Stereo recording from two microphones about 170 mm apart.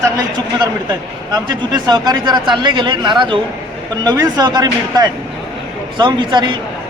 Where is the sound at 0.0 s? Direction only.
20° right (ahead or behind).